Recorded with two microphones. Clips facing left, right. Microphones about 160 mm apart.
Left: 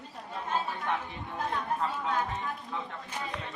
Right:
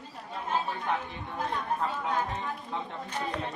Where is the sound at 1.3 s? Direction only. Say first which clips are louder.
Right 1 dB; 5° right (ahead or behind).